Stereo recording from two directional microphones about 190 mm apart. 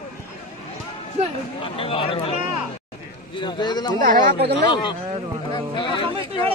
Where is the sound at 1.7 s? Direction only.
30° left (ahead or behind).